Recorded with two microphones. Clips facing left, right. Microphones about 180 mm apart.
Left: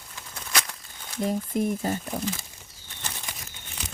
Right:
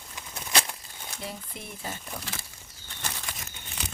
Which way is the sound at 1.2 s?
45° left (ahead or behind).